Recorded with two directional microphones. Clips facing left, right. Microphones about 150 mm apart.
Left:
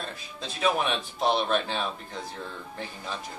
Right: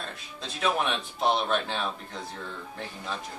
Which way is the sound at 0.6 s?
Centre (ahead or behind).